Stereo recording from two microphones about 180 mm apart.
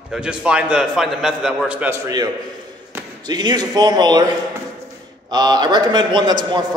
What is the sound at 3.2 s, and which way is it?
A man's voice, 25° right (ahead or behind).